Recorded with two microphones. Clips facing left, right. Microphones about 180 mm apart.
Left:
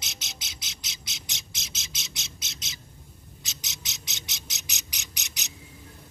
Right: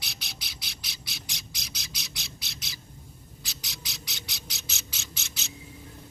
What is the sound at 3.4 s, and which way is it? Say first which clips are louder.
Bird: right 1 dB; 20° left (ahead or behind).